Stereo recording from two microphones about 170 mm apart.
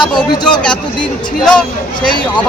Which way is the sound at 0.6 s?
5° left (ahead or behind).